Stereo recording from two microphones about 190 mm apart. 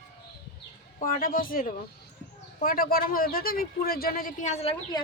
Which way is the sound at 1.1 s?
50° left (ahead or behind).